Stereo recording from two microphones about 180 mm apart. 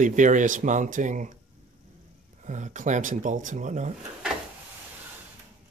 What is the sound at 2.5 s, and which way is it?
Speech, 40° right (ahead or behind).